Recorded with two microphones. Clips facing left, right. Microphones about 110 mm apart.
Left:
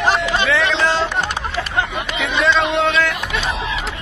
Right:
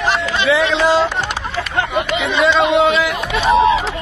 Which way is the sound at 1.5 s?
25° right (ahead or behind).